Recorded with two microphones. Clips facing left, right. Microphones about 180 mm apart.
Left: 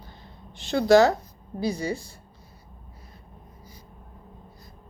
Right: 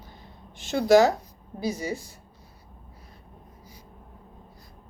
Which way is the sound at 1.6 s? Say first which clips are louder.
Left 2 dB; 35° left (ahead or behind).